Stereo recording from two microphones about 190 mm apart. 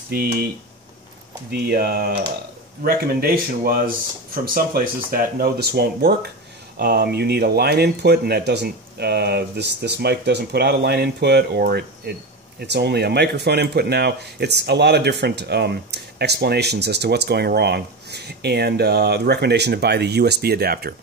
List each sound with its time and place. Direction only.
0.1 s speech: 55° right (ahead or behind)
1.5 s speech: 55° right (ahead or behind)